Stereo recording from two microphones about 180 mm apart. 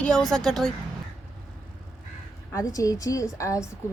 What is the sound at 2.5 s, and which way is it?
A woman's voice, 20° left (ahead or behind).